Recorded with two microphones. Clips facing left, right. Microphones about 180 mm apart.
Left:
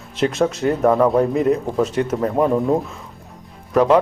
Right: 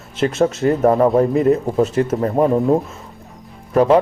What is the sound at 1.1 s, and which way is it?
Speech, centre (ahead or behind).